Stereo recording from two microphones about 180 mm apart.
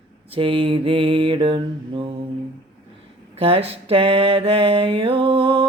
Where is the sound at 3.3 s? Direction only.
30° right (ahead or behind).